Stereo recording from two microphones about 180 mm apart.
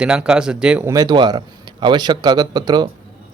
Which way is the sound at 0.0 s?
5° right (ahead or behind).